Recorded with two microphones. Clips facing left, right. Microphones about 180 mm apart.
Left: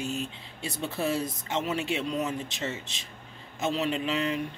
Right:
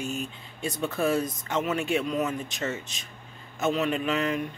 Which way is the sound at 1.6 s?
30° left (ahead or behind).